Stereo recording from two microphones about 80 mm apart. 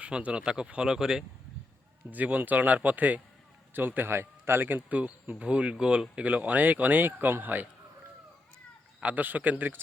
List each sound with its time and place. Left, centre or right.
0.0 s speech: centre
2.0 s speech: centre
9.0 s speech: centre